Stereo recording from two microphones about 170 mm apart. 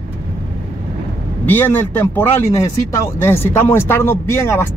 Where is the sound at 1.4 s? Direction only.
10° left (ahead or behind).